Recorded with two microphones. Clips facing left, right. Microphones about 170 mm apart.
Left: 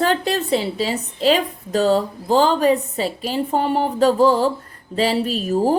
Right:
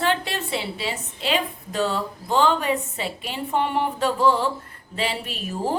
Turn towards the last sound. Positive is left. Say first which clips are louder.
# left 9 dB
turn(degrees=40)  # may be behind; listen again after turning